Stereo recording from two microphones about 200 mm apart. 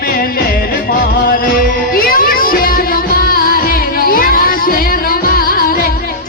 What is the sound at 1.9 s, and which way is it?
Music, 45° left (ahead or behind).